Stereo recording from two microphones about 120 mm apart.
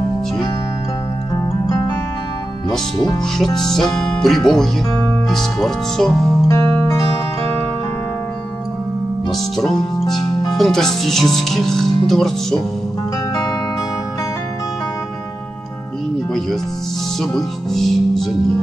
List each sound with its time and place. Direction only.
3.2 s speech: 5° left (ahead or behind)
6.4 s music: 25° left (ahead or behind)
9.3 s music: centre (ahead or behind)
10.6 s speech: 5° left (ahead or behind)
17.2 s speech: 5° left (ahead or behind)